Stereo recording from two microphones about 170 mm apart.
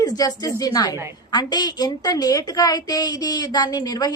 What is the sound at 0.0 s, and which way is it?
A woman's voice, 20° left (ahead or behind).